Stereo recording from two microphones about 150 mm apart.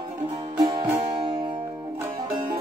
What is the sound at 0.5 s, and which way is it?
Music, 25° right (ahead or behind).